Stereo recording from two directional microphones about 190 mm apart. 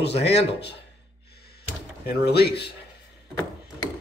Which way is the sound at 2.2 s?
60° left (ahead or behind).